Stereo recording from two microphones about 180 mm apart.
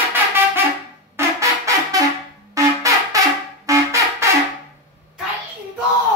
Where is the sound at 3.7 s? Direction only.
15° right (ahead or behind).